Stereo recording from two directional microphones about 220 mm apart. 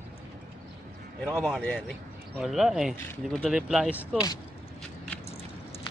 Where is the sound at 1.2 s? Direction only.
Centre (ahead or behind).